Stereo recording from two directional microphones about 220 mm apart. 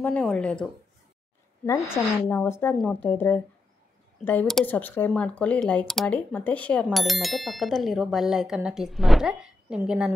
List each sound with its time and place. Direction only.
0.0 s speech: 5° left (ahead or behind)